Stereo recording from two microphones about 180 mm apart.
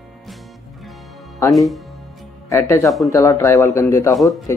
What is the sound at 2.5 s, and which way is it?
Speech, 15° left (ahead or behind).